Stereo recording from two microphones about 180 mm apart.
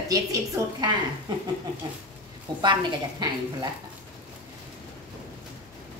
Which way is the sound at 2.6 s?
25° right (ahead or behind).